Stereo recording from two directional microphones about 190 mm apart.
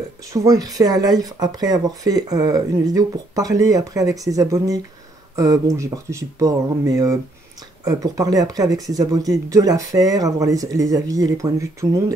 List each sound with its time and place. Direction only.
0.3 s speech: 20° right (ahead or behind)